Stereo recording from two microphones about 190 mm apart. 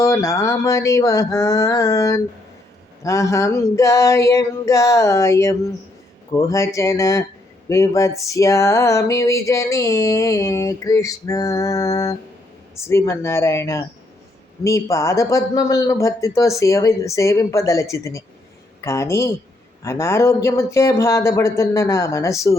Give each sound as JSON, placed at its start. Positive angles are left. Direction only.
{"t": 0.0, "sound": "speech", "side_deg": 15}